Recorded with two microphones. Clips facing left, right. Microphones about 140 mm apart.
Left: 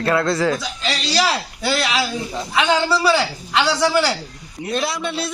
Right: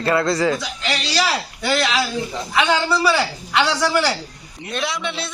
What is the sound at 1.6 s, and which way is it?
A man's voice, 5° left (ahead or behind).